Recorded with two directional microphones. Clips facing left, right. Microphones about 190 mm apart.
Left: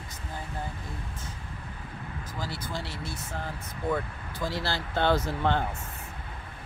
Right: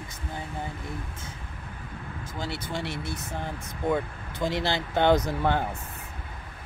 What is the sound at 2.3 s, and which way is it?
Speech, 25° right (ahead or behind).